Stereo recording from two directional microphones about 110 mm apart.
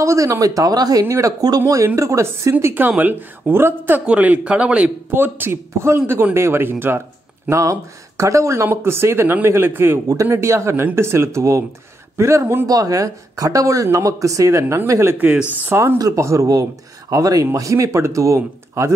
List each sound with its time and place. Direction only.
0.0 s a woman's voice: 30° right (ahead or behind)
2.5 s a woman's voice: 15° right (ahead or behind)
12.6 s a woman's voice: 35° right (ahead or behind)